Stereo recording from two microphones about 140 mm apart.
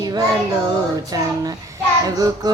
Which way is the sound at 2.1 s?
25° right (ahead or behind).